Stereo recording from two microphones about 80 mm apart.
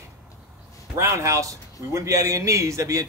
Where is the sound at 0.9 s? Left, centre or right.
Right.